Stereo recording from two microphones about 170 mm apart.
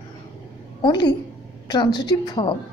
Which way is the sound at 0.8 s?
25° left (ahead or behind).